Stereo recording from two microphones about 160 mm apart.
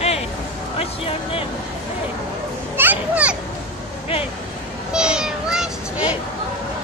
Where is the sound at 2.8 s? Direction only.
10° right (ahead or behind).